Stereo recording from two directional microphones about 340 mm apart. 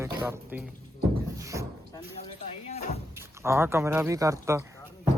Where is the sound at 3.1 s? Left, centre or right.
Centre.